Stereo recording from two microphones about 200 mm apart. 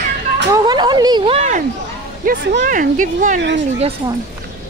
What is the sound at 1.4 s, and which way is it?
A woman's voice, 35° right (ahead or behind).